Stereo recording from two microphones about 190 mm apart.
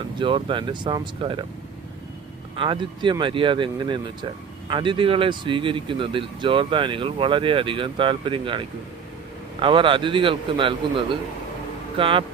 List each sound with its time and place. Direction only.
0.2 s speech: 25° right (ahead or behind)
2.6 s speech: 25° right (ahead or behind)